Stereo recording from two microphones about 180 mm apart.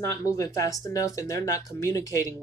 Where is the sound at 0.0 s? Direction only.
15° left (ahead or behind).